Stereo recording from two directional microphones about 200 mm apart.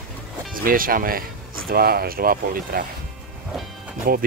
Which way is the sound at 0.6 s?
45° right (ahead or behind).